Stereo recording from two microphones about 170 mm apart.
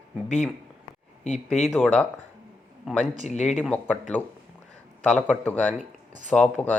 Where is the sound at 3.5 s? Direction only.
Centre (ahead or behind).